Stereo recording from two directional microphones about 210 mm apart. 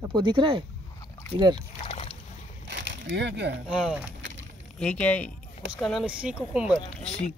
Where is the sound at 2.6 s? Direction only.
60° right (ahead or behind).